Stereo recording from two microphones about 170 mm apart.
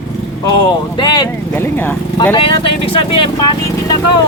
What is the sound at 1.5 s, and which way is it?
Speech, 10° left (ahead or behind).